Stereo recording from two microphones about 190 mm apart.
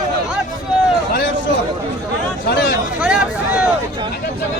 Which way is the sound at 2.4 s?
50° left (ahead or behind).